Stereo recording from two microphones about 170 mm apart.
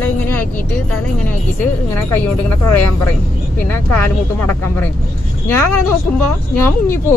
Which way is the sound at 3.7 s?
10° left (ahead or behind).